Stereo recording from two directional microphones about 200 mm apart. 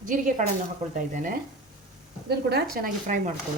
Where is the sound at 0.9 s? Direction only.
40° right (ahead or behind).